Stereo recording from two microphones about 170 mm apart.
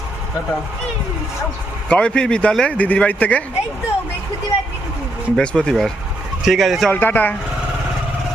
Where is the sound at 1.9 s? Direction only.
5° left (ahead or behind).